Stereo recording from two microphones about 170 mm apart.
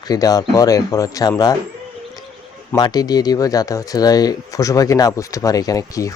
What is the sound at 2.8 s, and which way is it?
Speech, 25° left (ahead or behind).